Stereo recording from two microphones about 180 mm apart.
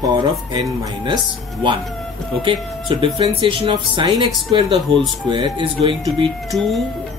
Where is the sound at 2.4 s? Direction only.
30° right (ahead or behind).